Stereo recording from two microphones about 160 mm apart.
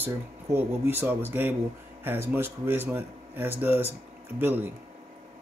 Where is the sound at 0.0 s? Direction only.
10° right (ahead or behind).